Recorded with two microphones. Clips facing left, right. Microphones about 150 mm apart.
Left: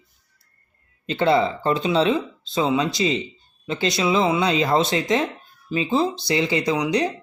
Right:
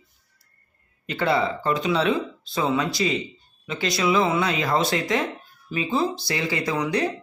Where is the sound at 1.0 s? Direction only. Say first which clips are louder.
Left 4 dB; 25° left (ahead or behind).